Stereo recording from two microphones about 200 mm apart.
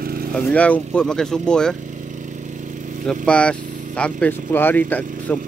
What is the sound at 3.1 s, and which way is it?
Speech, 5° left (ahead or behind).